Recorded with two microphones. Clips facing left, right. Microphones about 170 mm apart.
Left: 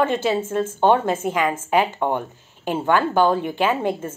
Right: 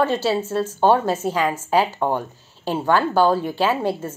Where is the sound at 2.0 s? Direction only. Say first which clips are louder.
Even; 40° right (ahead or behind).